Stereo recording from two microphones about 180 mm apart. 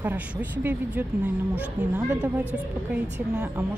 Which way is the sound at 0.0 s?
10° right (ahead or behind).